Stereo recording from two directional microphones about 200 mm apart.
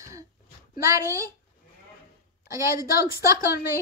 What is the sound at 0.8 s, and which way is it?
Speech, 15° right (ahead or behind).